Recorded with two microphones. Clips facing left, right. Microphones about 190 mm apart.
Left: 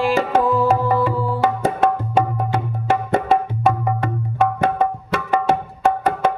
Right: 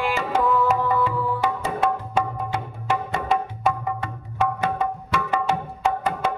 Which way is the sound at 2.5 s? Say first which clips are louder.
Left 6 dB; 50° left (ahead or behind).